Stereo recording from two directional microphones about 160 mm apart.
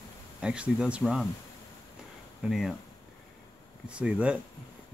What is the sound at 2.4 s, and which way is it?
Speech, centre (ahead or behind).